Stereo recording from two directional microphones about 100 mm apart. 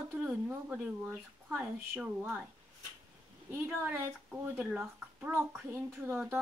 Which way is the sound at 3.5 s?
20° right (ahead or behind).